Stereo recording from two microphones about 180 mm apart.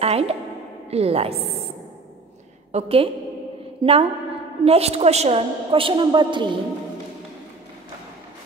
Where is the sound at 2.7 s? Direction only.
30° right (ahead or behind).